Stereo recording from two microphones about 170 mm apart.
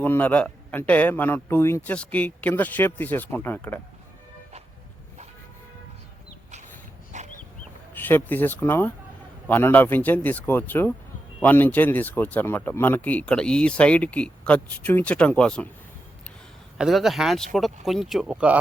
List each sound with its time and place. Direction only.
0.0 s speech: 10° left (ahead or behind)
7.1 s a sound: 45° right (ahead or behind)
7.9 s speech: 10° left (ahead or behind)
16.7 s speech: centre (ahead or behind)